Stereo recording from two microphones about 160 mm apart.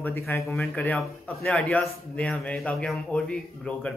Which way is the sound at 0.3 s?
10° left (ahead or behind).